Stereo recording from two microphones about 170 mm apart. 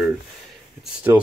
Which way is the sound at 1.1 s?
15° right (ahead or behind).